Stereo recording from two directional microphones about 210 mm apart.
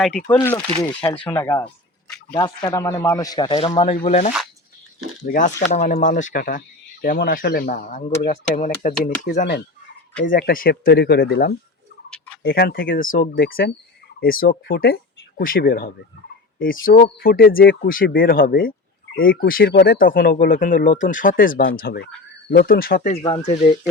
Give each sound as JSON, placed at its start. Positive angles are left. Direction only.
{"t": 0.0, "sound": "speech", "side_deg": 5}
{"t": 12.1, "sound": "a sound", "side_deg": 5}
{"t": 12.4, "sound": "speech", "side_deg": 45}
{"t": 23.1, "sound": "speech", "side_deg": 25}